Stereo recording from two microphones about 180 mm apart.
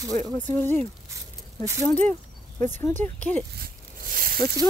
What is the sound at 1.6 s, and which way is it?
Speech, 15° right (ahead or behind).